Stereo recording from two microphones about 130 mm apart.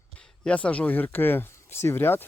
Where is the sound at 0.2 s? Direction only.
10° left (ahead or behind).